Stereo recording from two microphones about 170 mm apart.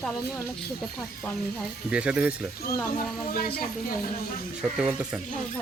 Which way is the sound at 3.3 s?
60° left (ahead or behind).